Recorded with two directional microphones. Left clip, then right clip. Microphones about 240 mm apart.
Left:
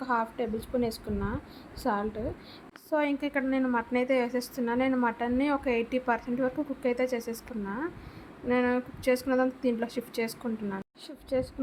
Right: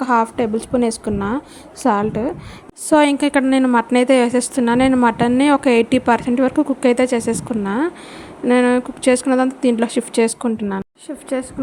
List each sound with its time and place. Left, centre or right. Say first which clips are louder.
0.0 s a woman's voice: right 13 dB; right
11.4 s a woman's voice: right 2 dB; right